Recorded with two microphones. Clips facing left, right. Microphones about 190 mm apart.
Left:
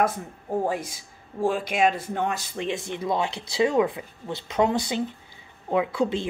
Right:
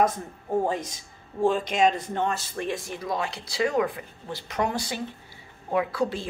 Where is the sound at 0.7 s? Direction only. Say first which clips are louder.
Left 1 dB; 10° left (ahead or behind).